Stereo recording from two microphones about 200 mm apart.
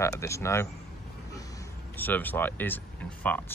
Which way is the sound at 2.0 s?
10° left (ahead or behind).